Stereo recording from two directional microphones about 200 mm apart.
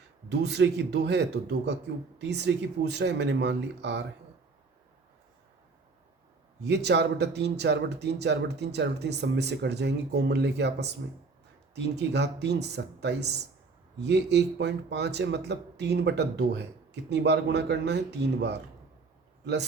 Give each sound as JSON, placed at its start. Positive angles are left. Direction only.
{"t": 0.3, "sound": "speech", "side_deg": -60}
{"t": 6.6, "sound": "speech", "side_deg": -55}